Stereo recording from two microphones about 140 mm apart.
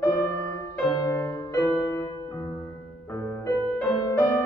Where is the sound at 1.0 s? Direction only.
20° left (ahead or behind).